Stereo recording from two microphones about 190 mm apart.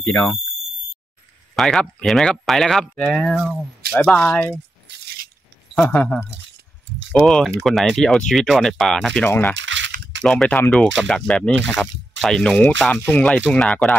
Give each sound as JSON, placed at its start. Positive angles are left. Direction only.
{"t": 0.1, "sound": "speech", "side_deg": 10}
{"t": 1.5, "sound": "speech", "side_deg": 0}
{"t": 5.8, "sound": "speech", "side_deg": 5}
{"t": 9.6, "sound": "a sound", "side_deg": -70}
{"t": 10.2, "sound": "speech", "side_deg": 5}